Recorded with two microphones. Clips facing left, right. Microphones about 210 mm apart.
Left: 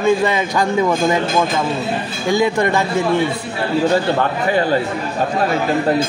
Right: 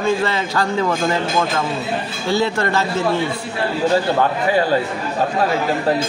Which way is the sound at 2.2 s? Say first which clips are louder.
Left 3 dB; 15° left (ahead or behind).